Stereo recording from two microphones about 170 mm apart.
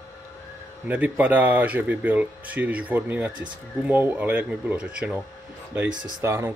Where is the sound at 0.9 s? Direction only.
10° right (ahead or behind).